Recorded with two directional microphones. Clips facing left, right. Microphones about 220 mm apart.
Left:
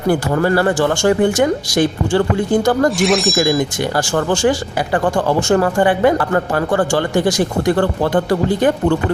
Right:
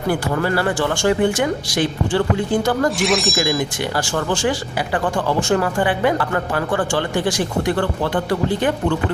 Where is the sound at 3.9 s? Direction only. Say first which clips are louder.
Left 5 dB; 45° left (ahead or behind).